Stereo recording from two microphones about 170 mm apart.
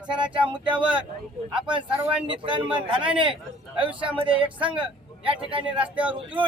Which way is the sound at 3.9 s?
5° right (ahead or behind).